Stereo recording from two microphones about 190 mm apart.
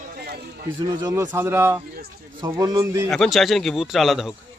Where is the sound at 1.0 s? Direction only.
15° right (ahead or behind).